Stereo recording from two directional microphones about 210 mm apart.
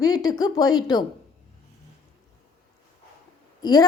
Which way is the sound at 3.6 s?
20° left (ahead or behind).